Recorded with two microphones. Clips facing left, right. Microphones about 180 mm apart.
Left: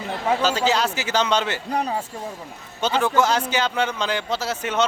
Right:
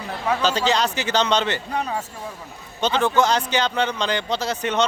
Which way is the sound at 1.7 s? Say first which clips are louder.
Left 2 dB; 35° left (ahead or behind).